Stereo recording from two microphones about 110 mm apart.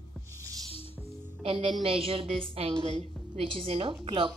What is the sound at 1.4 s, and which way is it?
A woman's voice, 55° right (ahead or behind).